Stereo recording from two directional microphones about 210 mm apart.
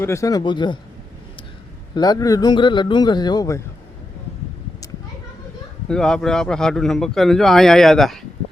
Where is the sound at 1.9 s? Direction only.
20° left (ahead or behind).